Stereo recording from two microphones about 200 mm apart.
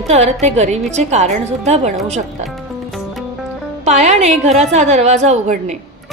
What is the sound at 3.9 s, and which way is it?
A woman's voice, 35° right (ahead or behind).